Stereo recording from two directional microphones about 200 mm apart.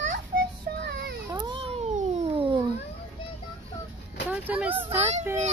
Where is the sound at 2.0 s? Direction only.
25° right (ahead or behind).